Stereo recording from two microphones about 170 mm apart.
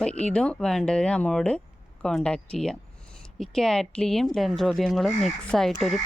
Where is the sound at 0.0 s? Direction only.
5° left (ahead or behind).